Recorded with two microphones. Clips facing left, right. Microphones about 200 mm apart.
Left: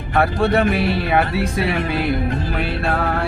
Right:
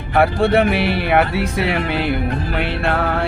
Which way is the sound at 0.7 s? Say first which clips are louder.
Right 1 dB; 65° right (ahead or behind).